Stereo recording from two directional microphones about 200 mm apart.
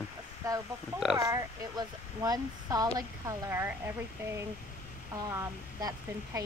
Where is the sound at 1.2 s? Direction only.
15° right (ahead or behind).